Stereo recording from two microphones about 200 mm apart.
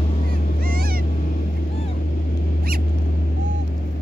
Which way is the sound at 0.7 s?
50° right (ahead or behind).